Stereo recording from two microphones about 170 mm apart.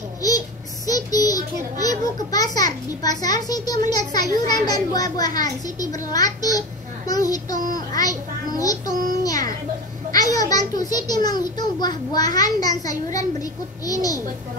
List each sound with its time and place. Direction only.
0.8 s a child's voice: 20° left (ahead or behind)
7.5 s a child's voice: 55° right (ahead or behind)
7.9 s a child's voice: 20° left (ahead or behind)
9.2 s a sound: 20° left (ahead or behind)
10.9 s a child's voice: 25° left (ahead or behind)